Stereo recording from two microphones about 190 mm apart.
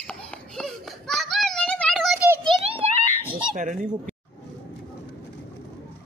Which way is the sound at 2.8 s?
30° right (ahead or behind).